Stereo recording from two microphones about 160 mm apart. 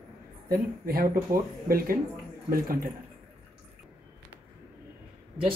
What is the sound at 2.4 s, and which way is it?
Speech, 65° right (ahead or behind).